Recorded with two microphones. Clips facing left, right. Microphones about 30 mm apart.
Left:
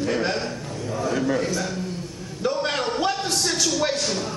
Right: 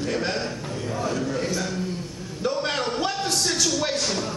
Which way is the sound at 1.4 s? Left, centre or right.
Centre.